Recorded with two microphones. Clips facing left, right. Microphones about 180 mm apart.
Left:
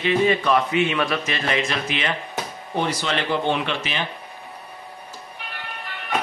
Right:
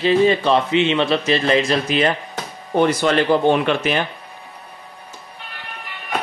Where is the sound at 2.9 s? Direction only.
50° right (ahead or behind).